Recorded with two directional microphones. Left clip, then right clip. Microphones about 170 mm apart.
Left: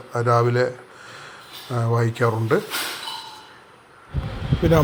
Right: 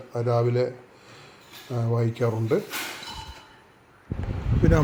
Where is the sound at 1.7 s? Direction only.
25° left (ahead or behind).